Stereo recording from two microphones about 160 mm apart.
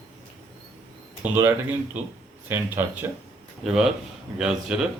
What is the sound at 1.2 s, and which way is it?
Speech, 15° right (ahead or behind).